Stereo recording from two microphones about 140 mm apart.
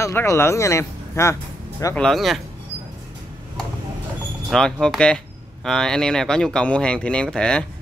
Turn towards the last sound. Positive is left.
turn(degrees=5)  # may be behind; listen again after turning